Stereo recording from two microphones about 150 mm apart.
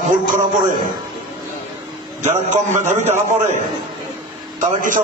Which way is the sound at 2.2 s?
55° right (ahead or behind).